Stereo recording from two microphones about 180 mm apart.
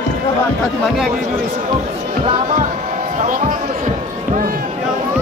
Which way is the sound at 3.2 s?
45° right (ahead or behind).